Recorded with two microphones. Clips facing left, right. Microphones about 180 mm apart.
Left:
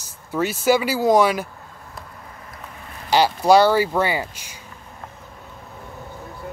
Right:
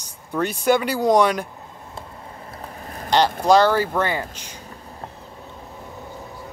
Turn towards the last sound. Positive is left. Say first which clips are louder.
# left 1 dB
turn(degrees=10)  # may be behind; listen again after turning